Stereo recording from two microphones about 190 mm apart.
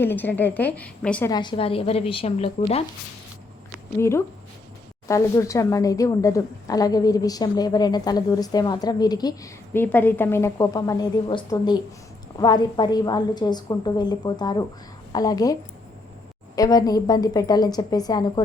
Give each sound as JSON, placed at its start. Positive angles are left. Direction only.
{"t": 0.0, "sound": "a woman's voice", "side_deg": 10}
{"t": 1.3, "sound": "a woman's voice", "side_deg": 25}
{"t": 5.0, "sound": "a woman's voice", "side_deg": 15}
{"t": 16.6, "sound": "a woman's voice", "side_deg": 20}